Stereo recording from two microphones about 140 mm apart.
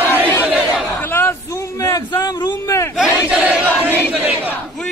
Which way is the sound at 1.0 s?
15° left (ahead or behind).